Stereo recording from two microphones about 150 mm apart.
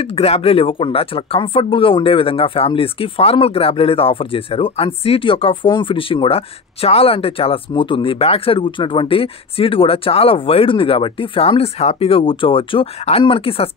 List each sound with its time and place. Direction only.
0.0 s speech: 40° left (ahead or behind)